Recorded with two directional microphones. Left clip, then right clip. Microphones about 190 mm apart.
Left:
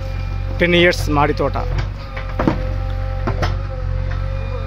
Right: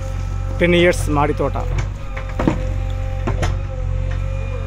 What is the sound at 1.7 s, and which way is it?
Music, 35° left (ahead or behind).